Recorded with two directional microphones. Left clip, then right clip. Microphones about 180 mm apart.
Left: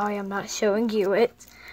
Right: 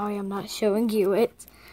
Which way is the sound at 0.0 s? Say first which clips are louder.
Left 3 dB; 40° right (ahead or behind).